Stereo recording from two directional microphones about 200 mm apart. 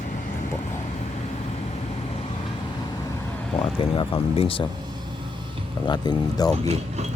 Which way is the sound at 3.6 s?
25° left (ahead or behind).